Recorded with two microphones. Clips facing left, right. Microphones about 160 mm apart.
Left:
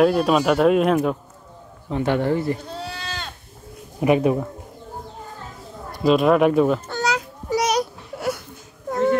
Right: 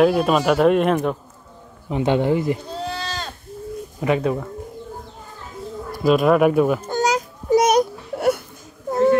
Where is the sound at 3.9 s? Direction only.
15° left (ahead or behind).